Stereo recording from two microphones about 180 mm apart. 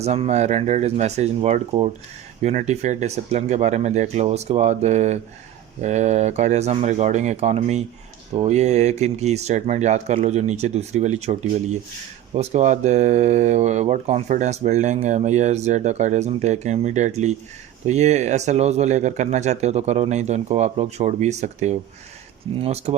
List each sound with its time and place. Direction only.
0.0 s speech: 35° right (ahead or behind)